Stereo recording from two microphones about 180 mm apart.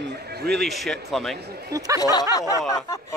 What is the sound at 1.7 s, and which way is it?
Speech, 20° right (ahead or behind).